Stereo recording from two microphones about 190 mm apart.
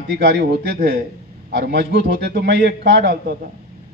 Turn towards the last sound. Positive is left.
turn(degrees=-55)  # may be behind; listen again after turning